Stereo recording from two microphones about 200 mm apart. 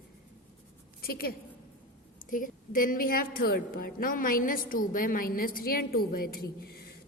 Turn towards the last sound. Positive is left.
turn(degrees=50)  # may be behind; listen again after turning